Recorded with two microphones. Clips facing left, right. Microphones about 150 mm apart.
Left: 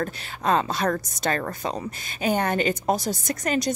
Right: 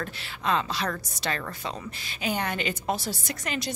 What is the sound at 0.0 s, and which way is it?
A woman's voice, 45° left (ahead or behind).